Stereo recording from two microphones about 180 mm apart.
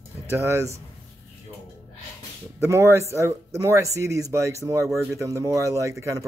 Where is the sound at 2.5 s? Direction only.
15° right (ahead or behind).